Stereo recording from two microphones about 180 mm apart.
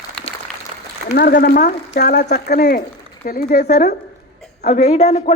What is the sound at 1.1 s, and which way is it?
Speech, 55° left (ahead or behind).